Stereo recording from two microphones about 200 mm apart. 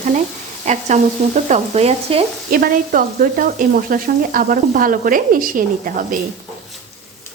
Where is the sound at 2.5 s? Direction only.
45° right (ahead or behind).